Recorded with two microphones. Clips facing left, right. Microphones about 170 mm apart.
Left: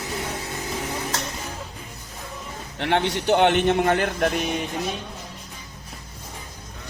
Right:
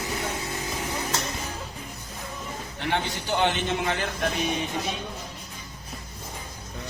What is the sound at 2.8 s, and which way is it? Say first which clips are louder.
A man's voice: left 6 dB; 70° left (ahead or behind).